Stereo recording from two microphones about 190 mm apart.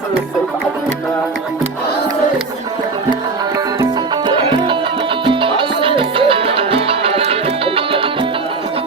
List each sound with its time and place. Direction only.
4.3 s music: 25° right (ahead or behind)